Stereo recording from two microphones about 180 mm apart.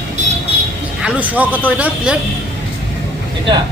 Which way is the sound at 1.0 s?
5° right (ahead or behind).